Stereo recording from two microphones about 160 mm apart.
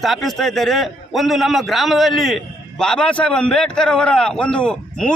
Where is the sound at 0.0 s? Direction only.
Centre (ahead or behind).